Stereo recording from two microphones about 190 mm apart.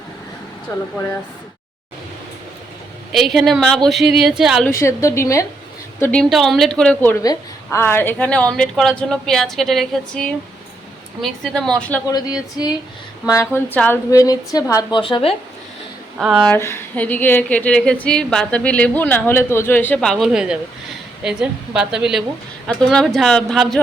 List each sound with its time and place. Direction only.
3.1 s a woman's voice: centre (ahead or behind)
4.8 s a woman's voice: 15° left (ahead or behind)
13.2 s a woman's voice: 15° left (ahead or behind)
16.1 s a woman's voice: centre (ahead or behind)
16.6 s a woman's voice: 15° left (ahead or behind)